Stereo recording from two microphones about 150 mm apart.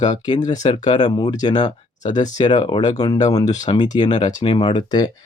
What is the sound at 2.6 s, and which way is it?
Speech, 30° left (ahead or behind).